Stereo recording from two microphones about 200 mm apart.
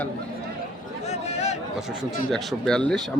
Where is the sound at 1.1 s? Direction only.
35° left (ahead or behind).